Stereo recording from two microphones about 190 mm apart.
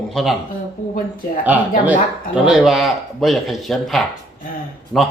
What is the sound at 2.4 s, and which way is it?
Speech, centre (ahead or behind).